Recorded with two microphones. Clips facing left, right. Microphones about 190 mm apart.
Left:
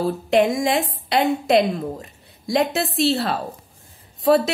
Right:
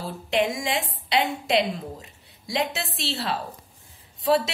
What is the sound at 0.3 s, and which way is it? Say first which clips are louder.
A woman's voice: left 6 dB; 40° left (ahead or behind).